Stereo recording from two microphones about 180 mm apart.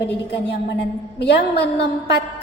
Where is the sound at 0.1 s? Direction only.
70° left (ahead or behind).